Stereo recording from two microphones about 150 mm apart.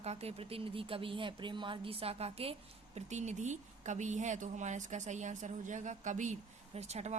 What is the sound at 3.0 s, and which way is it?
Speech, 50° right (ahead or behind).